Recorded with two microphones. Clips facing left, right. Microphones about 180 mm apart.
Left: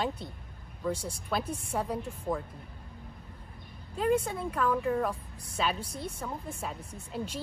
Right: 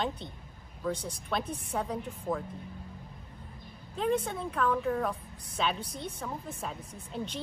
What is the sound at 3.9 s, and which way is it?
Speech, 5° left (ahead or behind).